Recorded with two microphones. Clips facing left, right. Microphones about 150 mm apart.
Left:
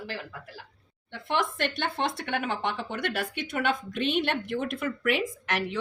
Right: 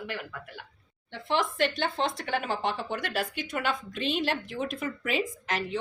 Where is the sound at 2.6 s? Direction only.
65° left (ahead or behind).